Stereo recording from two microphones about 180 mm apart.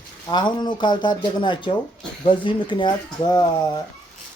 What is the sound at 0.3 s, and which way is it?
Speech, 25° left (ahead or behind).